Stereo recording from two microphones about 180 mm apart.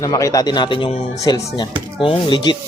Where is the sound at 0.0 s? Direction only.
20° left (ahead or behind).